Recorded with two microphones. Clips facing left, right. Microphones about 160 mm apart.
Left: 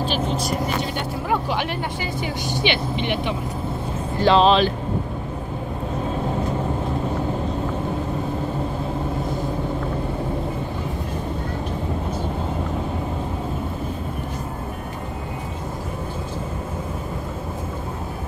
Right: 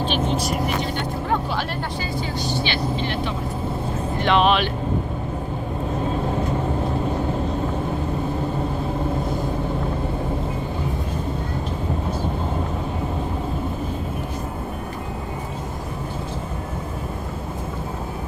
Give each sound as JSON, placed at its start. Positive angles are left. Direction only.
{"t": 0.9, "sound": "vehicle", "side_deg": 10}
{"t": 2.5, "sound": "speech", "side_deg": 15}
{"t": 4.2, "sound": "speech", "side_deg": 30}